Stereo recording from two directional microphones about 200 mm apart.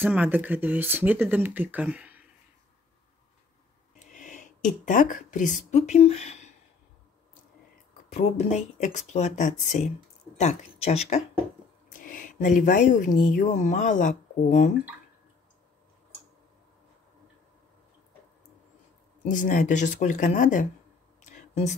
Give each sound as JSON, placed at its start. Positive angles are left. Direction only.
{"t": 0.0, "sound": "speech", "side_deg": -10}
{"t": 4.0, "sound": "a sound", "side_deg": 40}
{"t": 4.8, "sound": "speech", "side_deg": 40}
{"t": 8.1, "sound": "speech", "side_deg": 35}
{"t": 19.2, "sound": "speech", "side_deg": 40}
{"t": 21.2, "sound": "a sound", "side_deg": 35}